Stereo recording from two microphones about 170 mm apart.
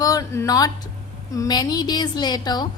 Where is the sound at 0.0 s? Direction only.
20° left (ahead or behind).